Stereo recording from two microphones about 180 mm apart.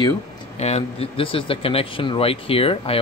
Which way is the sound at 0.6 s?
35° left (ahead or behind).